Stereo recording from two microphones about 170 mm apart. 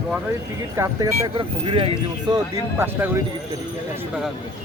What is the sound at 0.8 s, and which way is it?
Speech, 20° right (ahead or behind).